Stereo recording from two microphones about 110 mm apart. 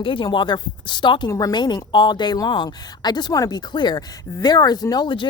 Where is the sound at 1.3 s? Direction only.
35° left (ahead or behind).